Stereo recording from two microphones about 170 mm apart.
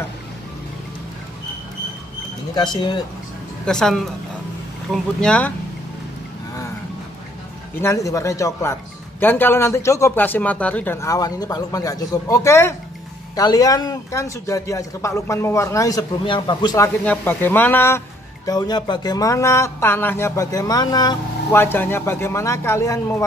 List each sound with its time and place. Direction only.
2.5 s a man's voice: 25° left (ahead or behind)
3.6 s speech: 5° left (ahead or behind)
7.8 s a man's voice: 20° left (ahead or behind)
21.5 s speech: 10° left (ahead or behind)